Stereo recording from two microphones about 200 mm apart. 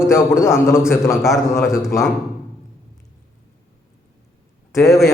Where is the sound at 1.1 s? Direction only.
Centre (ahead or behind).